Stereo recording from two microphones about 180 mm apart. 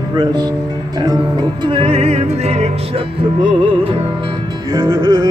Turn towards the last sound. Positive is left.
turn(degrees=-25)  # may be behind; listen again after turning